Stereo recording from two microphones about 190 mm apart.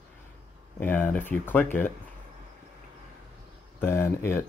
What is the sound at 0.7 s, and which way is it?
Speech, 10° left (ahead or behind).